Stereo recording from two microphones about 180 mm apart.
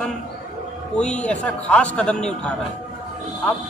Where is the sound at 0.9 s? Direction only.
5° left (ahead or behind).